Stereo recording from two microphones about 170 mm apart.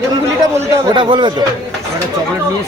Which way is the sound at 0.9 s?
30° right (ahead or behind).